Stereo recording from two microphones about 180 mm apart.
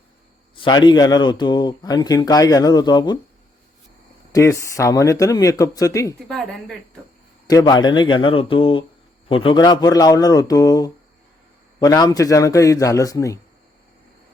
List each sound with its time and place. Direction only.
0.5 s a man's voice: 25° left (ahead or behind)
4.3 s speech: 15° left (ahead or behind)
6.2 s a woman's voice: 5° left (ahead or behind)
7.4 s a man's voice: 20° left (ahead or behind)